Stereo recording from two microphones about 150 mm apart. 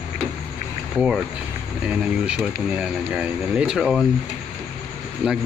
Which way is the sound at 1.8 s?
10° right (ahead or behind).